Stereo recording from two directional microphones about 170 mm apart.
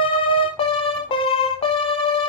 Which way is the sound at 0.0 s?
30° left (ahead or behind).